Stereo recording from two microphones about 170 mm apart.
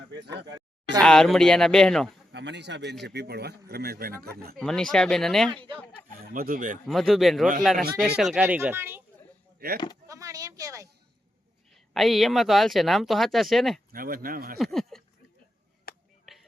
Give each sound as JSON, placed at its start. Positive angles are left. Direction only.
{"t": 0.3, "sound": "a sound", "side_deg": -90}
{"t": 1.0, "sound": "speech", "side_deg": 5}
{"t": 2.3, "sound": "speech", "side_deg": -90}
{"t": 3.0, "sound": "a man's voice", "side_deg": -75}
{"t": 4.5, "sound": "speech", "side_deg": 5}
{"t": 6.1, "sound": "speech", "side_deg": -60}
{"t": 6.8, "sound": "speech", "side_deg": 0}
{"t": 9.6, "sound": "speech", "side_deg": -60}
{"t": 10.1, "sound": "a sound", "side_deg": -20}
{"t": 11.7, "sound": "speech", "side_deg": 0}
{"t": 13.9, "sound": "speech", "side_deg": -55}
{"t": 14.6, "sound": "speech", "side_deg": 0}
{"t": 15.9, "sound": "a sound", "side_deg": 60}
{"t": 16.3, "sound": "a sound", "side_deg": 0}